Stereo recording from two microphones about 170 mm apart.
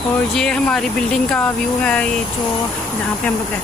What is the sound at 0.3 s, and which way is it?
Speech, 5° left (ahead or behind).